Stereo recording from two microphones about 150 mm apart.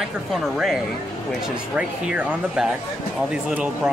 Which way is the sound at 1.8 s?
5° right (ahead or behind).